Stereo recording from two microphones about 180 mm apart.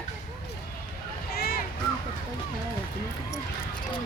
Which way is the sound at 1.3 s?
55° left (ahead or behind).